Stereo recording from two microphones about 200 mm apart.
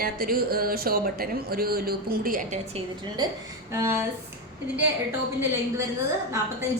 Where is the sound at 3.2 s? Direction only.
20° right (ahead or behind).